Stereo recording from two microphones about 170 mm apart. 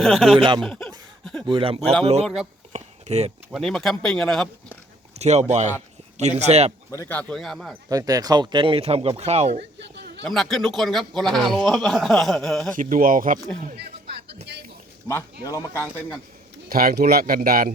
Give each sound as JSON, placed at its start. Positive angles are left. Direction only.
{"t": 0.0, "sound": "a man's voice", "side_deg": 0}
{"t": 0.3, "sound": "speech", "side_deg": -30}
{"t": 0.6, "sound": "a man's voice", "side_deg": 5}
{"t": 1.5, "sound": "speech", "side_deg": -30}
{"t": 2.2, "sound": "a man's voice", "side_deg": -5}
{"t": 2.7, "sound": "a sound", "side_deg": -40}
{"t": 3.5, "sound": "a man's voice", "side_deg": 0}
{"t": 5.1, "sound": "speech", "side_deg": -40}
{"t": 6.9, "sound": "speech", "side_deg": 15}
{"t": 7.9, "sound": "speech", "side_deg": -20}
{"t": 10.2, "sound": "a man's voice", "side_deg": 0}
{"t": 12.7, "sound": "speech", "side_deg": -55}
{"t": 15.0, "sound": "speech", "side_deg": 20}
{"t": 16.6, "sound": "speech", "side_deg": -60}